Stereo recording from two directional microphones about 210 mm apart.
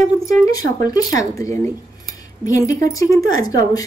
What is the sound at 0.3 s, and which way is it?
Speech, 15° left (ahead or behind).